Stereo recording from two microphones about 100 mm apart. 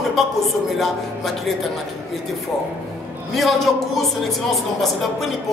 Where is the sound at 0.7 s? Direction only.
Centre (ahead or behind).